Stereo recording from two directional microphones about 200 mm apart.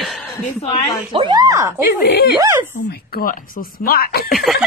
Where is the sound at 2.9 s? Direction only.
50° left (ahead or behind).